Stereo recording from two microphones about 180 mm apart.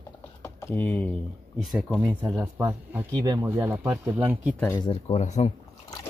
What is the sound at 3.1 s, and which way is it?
Speech, 25° right (ahead or behind).